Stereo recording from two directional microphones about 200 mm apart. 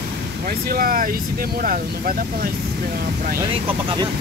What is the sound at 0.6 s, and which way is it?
Speech, 45° right (ahead or behind).